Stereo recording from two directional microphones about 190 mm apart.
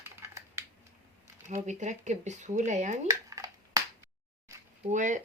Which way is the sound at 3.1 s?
15° right (ahead or behind).